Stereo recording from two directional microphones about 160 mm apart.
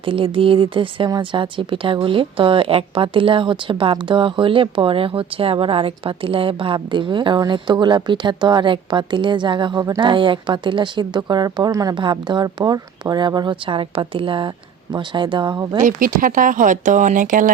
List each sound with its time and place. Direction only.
0.0 s speech: 35° right (ahead or behind)
15.8 s speech: 55° right (ahead or behind)